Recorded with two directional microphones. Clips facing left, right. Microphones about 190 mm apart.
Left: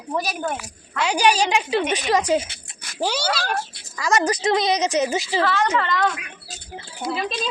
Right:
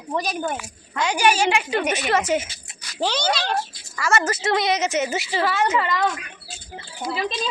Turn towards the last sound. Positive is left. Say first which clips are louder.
# even
turn(degrees=0)  # may be behind; listen again after turning